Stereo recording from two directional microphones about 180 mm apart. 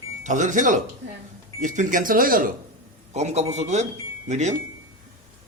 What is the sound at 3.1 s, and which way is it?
A man's voice, 40° right (ahead or behind).